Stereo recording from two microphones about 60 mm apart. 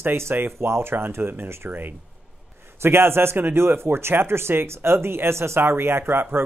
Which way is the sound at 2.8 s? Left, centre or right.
Right.